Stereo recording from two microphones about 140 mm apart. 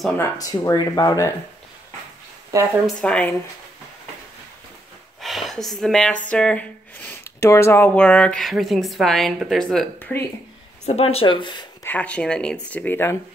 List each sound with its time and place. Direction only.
0.2 s speech: 25° left (ahead or behind)
3.0 s speech: 5° left (ahead or behind)
5.2 s a woman's voice: centre (ahead or behind)
9.9 s speech: 15° left (ahead or behind)
10.9 s speech: 45° left (ahead or behind)
11.8 s speech: 10° left (ahead or behind)